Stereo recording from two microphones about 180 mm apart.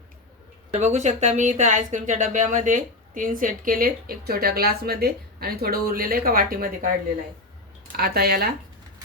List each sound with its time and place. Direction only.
0.7 s speech: 40° right (ahead or behind)
7.9 s speech: 60° right (ahead or behind)